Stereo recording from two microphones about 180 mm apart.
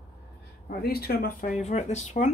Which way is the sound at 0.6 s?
60° left (ahead or behind).